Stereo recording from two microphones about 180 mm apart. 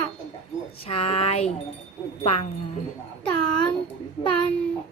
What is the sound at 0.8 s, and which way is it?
Speech, 35° left (ahead or behind).